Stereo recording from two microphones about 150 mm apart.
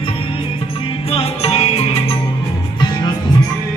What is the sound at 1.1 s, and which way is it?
Music, 40° left (ahead or behind).